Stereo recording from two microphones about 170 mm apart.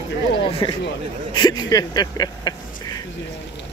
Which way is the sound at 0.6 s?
30° left (ahead or behind).